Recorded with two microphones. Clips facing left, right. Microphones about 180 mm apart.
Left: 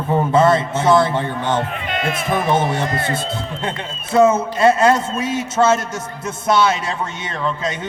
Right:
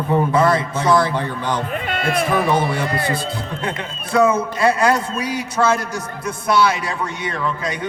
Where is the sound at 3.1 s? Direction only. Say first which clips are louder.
Even; 25° left (ahead or behind).